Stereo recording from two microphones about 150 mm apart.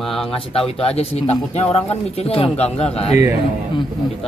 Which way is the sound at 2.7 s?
5° left (ahead or behind).